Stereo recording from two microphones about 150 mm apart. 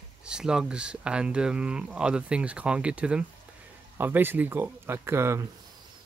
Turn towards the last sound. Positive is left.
turn(degrees=-15)  # may be behind; listen again after turning